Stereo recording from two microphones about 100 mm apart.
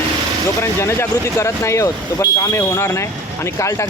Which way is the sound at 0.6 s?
25° left (ahead or behind).